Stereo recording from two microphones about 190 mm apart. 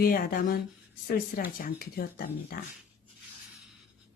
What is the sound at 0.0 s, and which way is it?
Speech, 50° left (ahead or behind).